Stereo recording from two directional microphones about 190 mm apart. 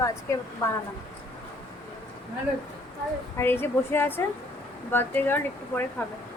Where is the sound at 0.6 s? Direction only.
15° left (ahead or behind).